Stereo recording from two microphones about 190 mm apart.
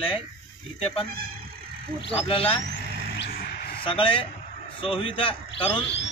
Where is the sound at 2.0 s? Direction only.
30° left (ahead or behind).